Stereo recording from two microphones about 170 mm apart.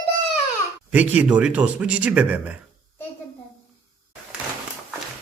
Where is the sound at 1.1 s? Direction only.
5° right (ahead or behind).